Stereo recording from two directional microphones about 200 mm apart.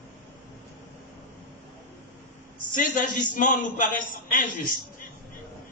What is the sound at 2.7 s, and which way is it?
A man's voice, 40° left (ahead or behind).